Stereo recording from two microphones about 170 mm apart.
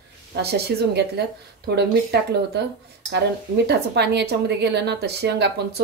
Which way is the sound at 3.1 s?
85° right.